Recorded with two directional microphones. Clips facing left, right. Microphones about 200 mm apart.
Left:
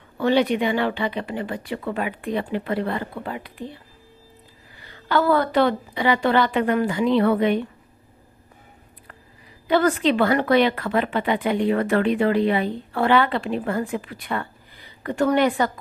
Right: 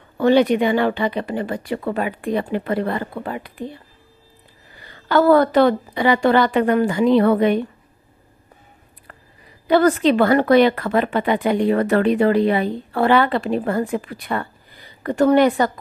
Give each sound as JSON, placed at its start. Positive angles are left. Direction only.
{"t": 0.2, "sound": "speech", "side_deg": -45}
{"t": 4.8, "sound": "speech", "side_deg": -45}
{"t": 9.7, "sound": "speech", "side_deg": -40}